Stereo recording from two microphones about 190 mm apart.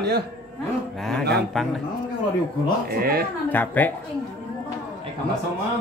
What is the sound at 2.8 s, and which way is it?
Speech, 50° right (ahead or behind).